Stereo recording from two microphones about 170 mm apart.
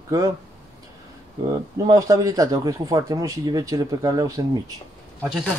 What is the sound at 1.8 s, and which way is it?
Speech, 20° right (ahead or behind).